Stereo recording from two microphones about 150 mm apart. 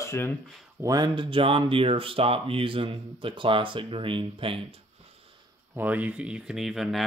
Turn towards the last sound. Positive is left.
turn(degrees=0)  # may be behind; listen again after turning